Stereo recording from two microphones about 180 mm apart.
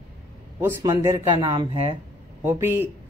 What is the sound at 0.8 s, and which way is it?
Speech, 25° right (ahead or behind).